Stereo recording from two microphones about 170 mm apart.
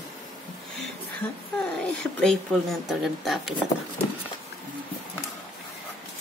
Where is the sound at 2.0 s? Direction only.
5° left (ahead or behind).